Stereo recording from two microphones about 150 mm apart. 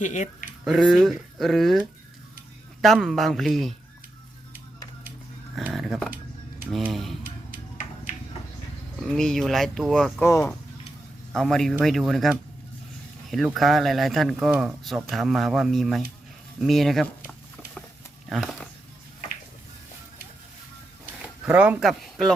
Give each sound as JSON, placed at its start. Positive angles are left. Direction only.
{"t": 0.0, "sound": "speech", "side_deg": 55}
{"t": 0.6, "sound": "speech", "side_deg": 0}
{"t": 5.7, "sound": "speech", "side_deg": 0}
{"t": 7.3, "sound": "music", "side_deg": 65}
{"t": 9.0, "sound": "speech", "side_deg": 5}
{"t": 10.2, "sound": "speech", "side_deg": 20}
{"t": 11.3, "sound": "speech", "side_deg": 5}
{"t": 13.3, "sound": "speech", "side_deg": 0}
{"t": 18.3, "sound": "speech", "side_deg": 0}
{"t": 21.4, "sound": "speech", "side_deg": -10}